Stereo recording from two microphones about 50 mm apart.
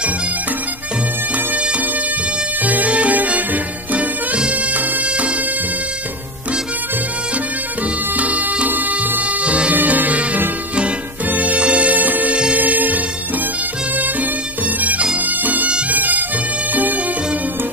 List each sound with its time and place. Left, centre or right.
1.3 s music: right
4.4 s bagpipes: right
8.2 s music: right
9.8 s music: right
15.9 s bagpipes: right
16.7 s music: right